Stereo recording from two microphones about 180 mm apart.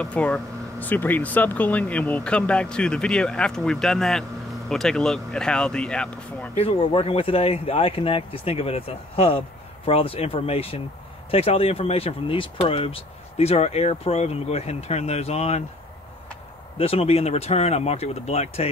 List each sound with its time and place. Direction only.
0.0 s speech: 5° left (ahead or behind)
6.5 s speech: 30° left (ahead or behind)
16.7 s speech: 30° left (ahead or behind)